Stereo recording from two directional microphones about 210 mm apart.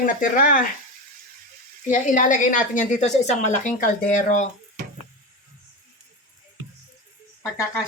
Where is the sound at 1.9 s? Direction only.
40° left (ahead or behind).